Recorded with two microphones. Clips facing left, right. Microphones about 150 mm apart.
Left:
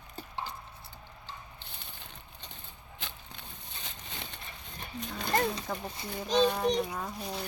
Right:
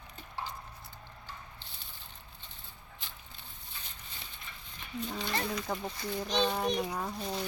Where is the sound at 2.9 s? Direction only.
75° left (ahead or behind).